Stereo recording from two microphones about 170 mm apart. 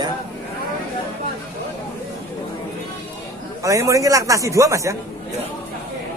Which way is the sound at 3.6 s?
20° right (ahead or behind).